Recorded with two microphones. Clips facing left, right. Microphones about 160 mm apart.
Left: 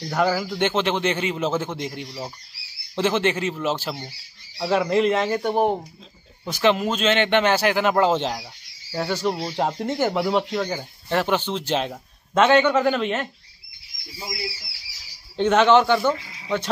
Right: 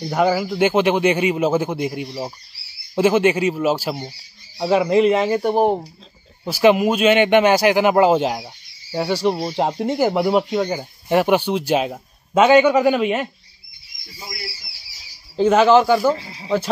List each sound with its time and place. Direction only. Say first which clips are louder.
0.0 s speech: right 4 dB; 10° right (ahead or behind)
15.3 s speech: right 3 dB; 5° right (ahead or behind)
16.1 s speech: right 4 dB; 30° right (ahead or behind)